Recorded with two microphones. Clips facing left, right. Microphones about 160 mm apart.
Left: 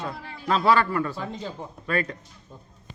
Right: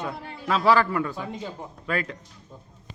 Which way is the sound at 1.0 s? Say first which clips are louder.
Even; 10° right (ahead or behind).